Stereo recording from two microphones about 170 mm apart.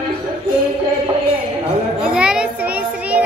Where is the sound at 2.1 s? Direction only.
5° right (ahead or behind).